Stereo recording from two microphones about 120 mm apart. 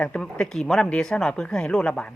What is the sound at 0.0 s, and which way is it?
Speech, 10° left (ahead or behind).